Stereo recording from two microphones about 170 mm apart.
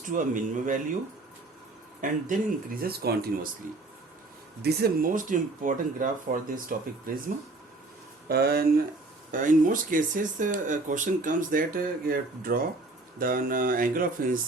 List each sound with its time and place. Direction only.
0.0 s speech: 50° right (ahead or behind)
2.0 s speech: 50° right (ahead or behind)
4.6 s speech: 65° right (ahead or behind)
8.3 s speech: 70° right (ahead or behind)
9.3 s speech: 50° right (ahead or behind)